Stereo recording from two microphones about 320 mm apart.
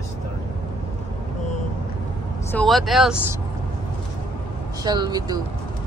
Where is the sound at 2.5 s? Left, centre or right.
Centre.